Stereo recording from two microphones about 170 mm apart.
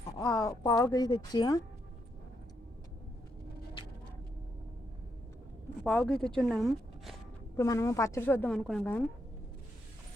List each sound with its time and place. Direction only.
0.2 s speech: 20° left (ahead or behind)
5.8 s a woman's voice: 5° left (ahead or behind)
7.5 s a woman's voice: 15° left (ahead or behind)